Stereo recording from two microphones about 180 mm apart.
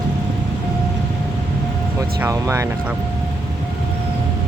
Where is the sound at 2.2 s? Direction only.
15° right (ahead or behind).